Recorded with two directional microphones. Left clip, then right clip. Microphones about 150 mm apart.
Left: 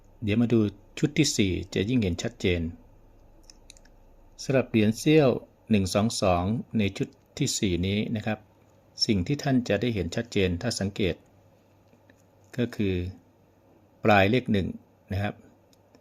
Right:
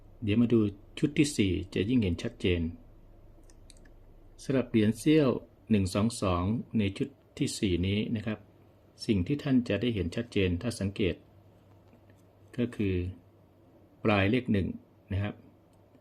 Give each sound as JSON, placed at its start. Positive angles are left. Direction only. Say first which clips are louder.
{"t": 0.3, "sound": "speech", "louder": "left 2 dB", "side_deg": 30}
{"t": 4.4, "sound": "speech", "louder": "left 4 dB", "side_deg": 25}
{"t": 12.5, "sound": "speech", "louder": "left 3 dB", "side_deg": 35}